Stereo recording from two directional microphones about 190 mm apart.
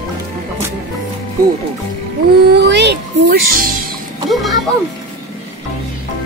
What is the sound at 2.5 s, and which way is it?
A child's voice, 65° right (ahead or behind).